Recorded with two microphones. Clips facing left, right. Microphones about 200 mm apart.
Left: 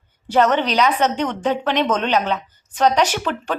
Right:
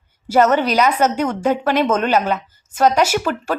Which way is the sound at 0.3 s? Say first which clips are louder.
Right 2 dB; 5° right (ahead or behind).